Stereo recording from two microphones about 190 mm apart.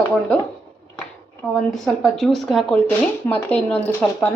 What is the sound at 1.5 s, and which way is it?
Speech, centre (ahead or behind).